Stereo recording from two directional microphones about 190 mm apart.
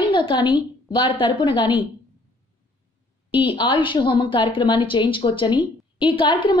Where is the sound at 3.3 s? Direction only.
25° left (ahead or behind).